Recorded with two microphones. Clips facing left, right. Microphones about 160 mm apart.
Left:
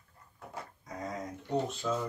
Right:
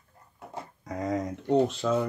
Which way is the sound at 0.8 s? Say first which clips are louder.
Right 10 dB; 80° right.